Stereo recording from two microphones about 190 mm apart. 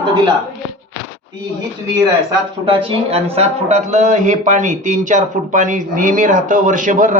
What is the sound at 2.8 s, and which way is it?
A man's voice, 35° right (ahead or behind).